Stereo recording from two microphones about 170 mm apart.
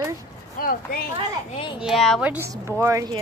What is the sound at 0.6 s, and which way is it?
Speech, 55° left (ahead or behind).